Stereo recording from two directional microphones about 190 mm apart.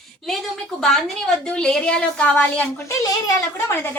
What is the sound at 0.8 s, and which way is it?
A woman's voice, centre (ahead or behind).